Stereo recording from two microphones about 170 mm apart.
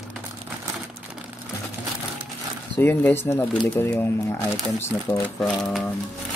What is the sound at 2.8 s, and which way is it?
Speech, 10° left (ahead or behind).